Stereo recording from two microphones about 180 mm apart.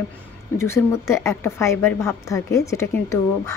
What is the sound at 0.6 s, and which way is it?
Speech, 15° left (ahead or behind).